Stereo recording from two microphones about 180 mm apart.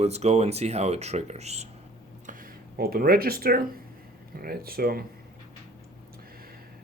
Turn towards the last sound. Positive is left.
turn(degrees=-55)  # may be behind; listen again after turning